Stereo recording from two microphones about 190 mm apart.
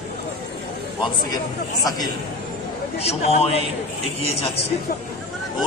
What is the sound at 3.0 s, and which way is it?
A man's voice, 30° left (ahead or behind).